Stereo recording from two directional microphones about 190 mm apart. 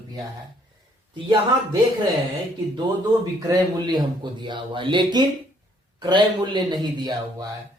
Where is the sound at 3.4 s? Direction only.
20° right (ahead or behind).